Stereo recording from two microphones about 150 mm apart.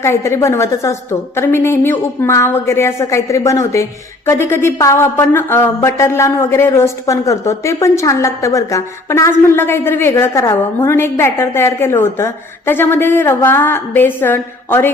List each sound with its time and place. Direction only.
0.0 s a woman's voice: 20° left (ahead or behind)